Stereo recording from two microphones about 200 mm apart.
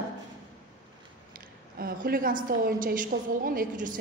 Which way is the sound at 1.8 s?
45° right (ahead or behind).